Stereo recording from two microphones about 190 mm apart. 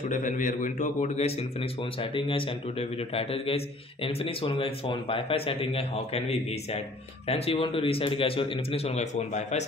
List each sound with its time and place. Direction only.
0.0 s a man's voice: 40° left (ahead or behind)